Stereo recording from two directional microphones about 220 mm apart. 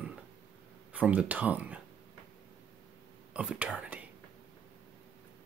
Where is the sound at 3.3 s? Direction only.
5° right (ahead or behind).